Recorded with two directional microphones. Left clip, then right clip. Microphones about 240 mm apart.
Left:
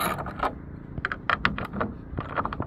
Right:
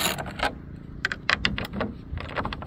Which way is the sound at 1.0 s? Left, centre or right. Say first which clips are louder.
Right 1 dB; right.